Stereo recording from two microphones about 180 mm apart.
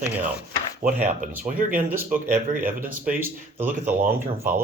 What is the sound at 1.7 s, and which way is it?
Speech, 10° right (ahead or behind).